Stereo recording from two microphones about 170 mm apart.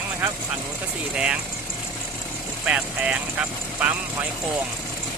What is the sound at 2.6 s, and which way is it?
Speech, 5° right (ahead or behind).